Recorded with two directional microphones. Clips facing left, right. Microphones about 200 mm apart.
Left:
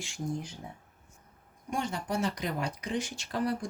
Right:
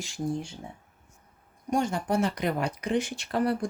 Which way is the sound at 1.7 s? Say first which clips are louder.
Right 6 dB; 45° right (ahead or behind).